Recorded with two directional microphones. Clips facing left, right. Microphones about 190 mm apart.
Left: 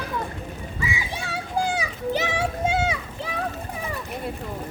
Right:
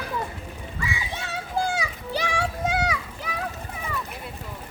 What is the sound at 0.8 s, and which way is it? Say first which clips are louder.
Children playing: left 1 dB; 15° left (ahead or behind).